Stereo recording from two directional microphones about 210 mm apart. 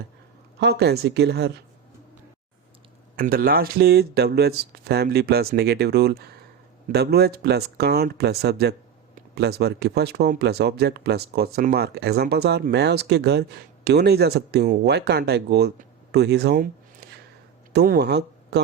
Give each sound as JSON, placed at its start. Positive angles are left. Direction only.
{"t": 0.6, "sound": "speech", "side_deg": -50}
{"t": 3.2, "sound": "speech", "side_deg": -45}
{"t": 17.7, "sound": "speech", "side_deg": -50}